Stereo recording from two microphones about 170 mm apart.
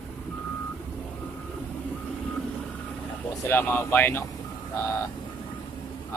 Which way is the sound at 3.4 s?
10° left (ahead or behind).